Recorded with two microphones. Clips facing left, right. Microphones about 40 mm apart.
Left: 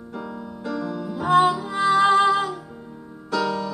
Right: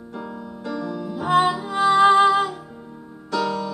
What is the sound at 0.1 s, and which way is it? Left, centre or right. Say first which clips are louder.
Music: even; centre.